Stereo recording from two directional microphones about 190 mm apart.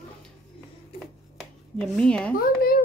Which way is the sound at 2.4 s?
50° left (ahead or behind).